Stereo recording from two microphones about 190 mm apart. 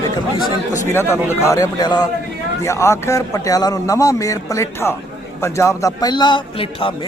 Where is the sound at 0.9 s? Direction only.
10° left (ahead or behind).